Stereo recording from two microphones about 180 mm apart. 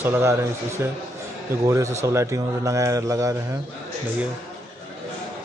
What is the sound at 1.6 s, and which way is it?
A man's voice, 15° right (ahead or behind).